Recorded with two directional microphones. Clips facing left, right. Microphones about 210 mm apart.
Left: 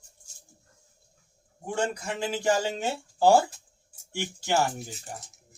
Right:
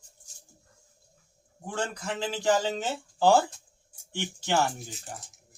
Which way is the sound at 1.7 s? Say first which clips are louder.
Left 3 dB; 10° left (ahead or behind).